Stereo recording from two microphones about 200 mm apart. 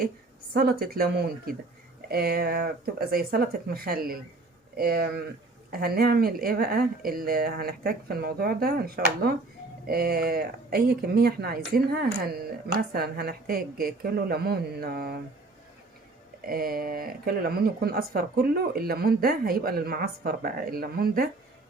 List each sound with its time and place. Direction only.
0.5 s speech: 50° right (ahead or behind)
16.5 s speech: 50° right (ahead or behind)